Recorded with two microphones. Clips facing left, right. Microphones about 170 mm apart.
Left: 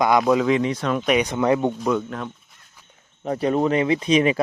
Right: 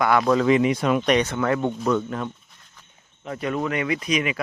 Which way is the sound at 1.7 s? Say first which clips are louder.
Even; 5° left (ahead or behind).